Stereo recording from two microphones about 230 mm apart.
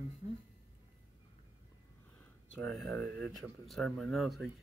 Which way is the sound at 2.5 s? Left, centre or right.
Centre.